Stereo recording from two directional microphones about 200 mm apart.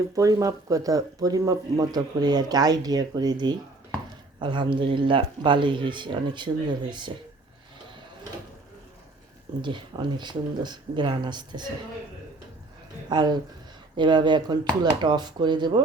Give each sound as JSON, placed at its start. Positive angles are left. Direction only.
{"t": 0.2, "sound": "speech", "side_deg": -15}
{"t": 9.6, "sound": "speech", "side_deg": -25}
{"t": 13.1, "sound": "speech", "side_deg": -20}